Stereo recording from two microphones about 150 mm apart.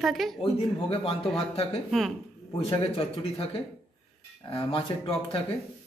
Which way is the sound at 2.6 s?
40° left (ahead or behind).